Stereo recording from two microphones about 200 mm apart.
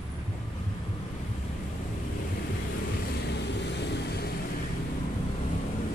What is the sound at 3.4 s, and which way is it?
Vehicle, 60° left (ahead or behind).